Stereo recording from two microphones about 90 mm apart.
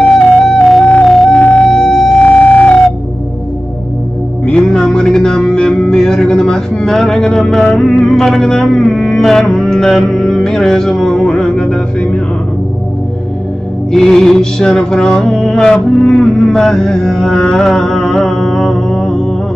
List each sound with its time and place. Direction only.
0.0 s music: 10° left (ahead or behind)
1.3 s music: 15° left (ahead or behind)
1.8 s music: 5° left (ahead or behind)
4.5 s music: 10° left (ahead or behind)
13.9 s music: 5° left (ahead or behind)